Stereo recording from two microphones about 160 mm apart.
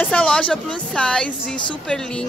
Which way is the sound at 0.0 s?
10° left (ahead or behind).